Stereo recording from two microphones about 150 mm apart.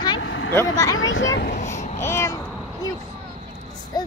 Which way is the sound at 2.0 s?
20° left (ahead or behind).